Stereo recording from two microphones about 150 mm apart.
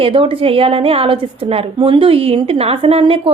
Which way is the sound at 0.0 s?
35° right (ahead or behind).